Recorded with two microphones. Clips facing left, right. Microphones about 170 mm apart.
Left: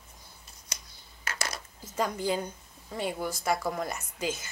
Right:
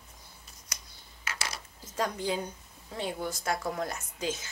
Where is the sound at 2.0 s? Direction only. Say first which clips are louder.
Left 2 dB; 5° left (ahead or behind).